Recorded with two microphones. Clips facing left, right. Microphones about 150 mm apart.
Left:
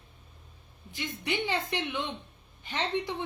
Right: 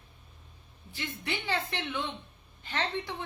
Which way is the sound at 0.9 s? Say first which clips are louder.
Left 3 dB; 15° left (ahead or behind).